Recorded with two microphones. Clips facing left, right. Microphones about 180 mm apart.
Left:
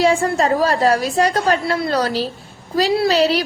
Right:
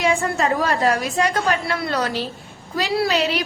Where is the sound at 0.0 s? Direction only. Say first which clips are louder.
Left 4 dB; 35° left (ahead or behind).